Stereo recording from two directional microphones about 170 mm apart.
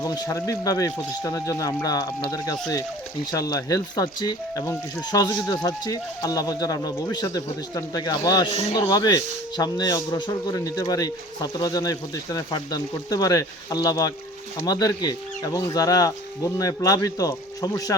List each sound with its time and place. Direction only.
0.0 s speech: 20° left (ahead or behind)